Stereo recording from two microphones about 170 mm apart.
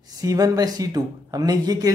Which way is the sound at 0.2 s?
20° right (ahead or behind).